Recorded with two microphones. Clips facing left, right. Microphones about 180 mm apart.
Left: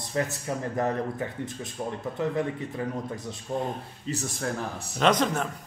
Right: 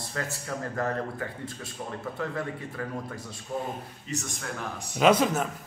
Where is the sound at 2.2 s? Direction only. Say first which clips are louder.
Left 5 dB; 20° left (ahead or behind).